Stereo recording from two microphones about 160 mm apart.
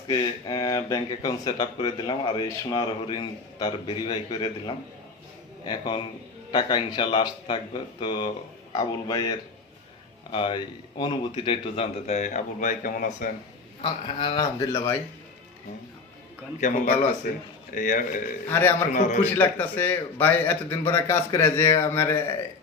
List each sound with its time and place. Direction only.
0.1 s speech: 25° left (ahead or behind); by 13.2 s 55° left (ahead or behind)
13.8 s speech: 30° left (ahead or behind)
16.6 s speech: 50° left (ahead or behind)
18.4 s a man's voice: 15° left (ahead or behind)
18.9 s speech: 50° left (ahead or behind)
19.2 s a man's voice: 10° left (ahead or behind)